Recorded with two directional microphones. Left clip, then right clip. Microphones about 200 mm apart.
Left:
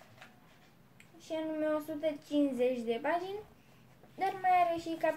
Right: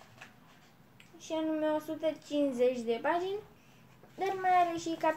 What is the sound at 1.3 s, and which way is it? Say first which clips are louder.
A woman's voice: right 2 dB; 5° right (ahead or behind).